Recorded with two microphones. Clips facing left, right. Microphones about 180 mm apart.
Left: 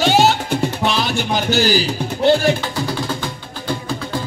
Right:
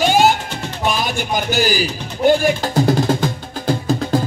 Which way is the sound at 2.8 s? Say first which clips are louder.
Right 7 dB; 45° right (ahead or behind).